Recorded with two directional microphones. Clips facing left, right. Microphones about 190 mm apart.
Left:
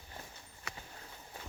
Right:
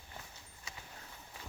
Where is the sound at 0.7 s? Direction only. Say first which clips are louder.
Left 4 dB; 65° left (ahead or behind).